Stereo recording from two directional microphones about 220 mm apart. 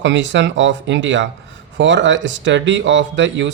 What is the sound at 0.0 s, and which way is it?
Speech, 55° right (ahead or behind).